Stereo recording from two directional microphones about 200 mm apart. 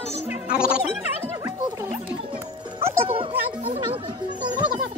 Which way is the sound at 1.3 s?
15° right (ahead or behind).